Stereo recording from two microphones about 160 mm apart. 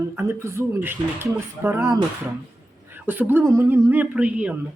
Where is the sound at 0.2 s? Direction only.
15° right (ahead or behind).